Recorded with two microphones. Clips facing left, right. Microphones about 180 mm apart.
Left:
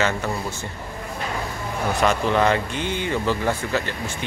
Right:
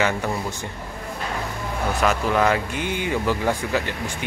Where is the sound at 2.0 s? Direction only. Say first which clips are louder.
Left 1 dB; 5° right (ahead or behind).